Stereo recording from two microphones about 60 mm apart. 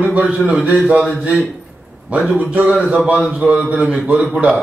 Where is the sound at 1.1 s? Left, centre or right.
Centre.